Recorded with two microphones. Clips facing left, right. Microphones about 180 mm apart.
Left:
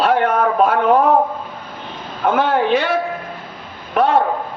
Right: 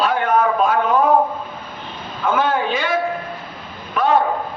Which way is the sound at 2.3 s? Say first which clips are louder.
Left 3 dB; 65° left (ahead or behind).